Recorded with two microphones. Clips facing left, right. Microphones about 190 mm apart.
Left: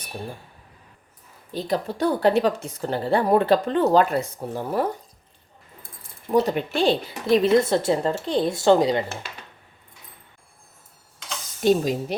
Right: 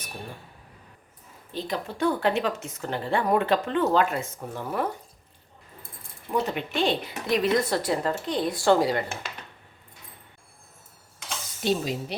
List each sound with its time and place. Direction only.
1.5 s speech: 35° left (ahead or behind)
6.4 s a woman's voice: 40° left (ahead or behind); by 9.0 s 20° left (ahead or behind)
11.6 s speech: 45° left (ahead or behind)